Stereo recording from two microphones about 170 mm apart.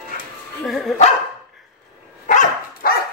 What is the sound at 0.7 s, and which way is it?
Dog, centre (ahead or behind).